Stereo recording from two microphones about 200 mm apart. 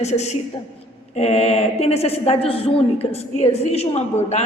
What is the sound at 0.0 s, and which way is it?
A woman's voice, 35° left (ahead or behind).